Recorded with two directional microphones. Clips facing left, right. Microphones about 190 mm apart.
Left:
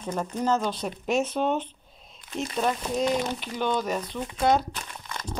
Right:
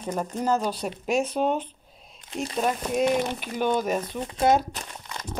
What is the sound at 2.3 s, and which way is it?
Speech, 30° right (ahead or behind).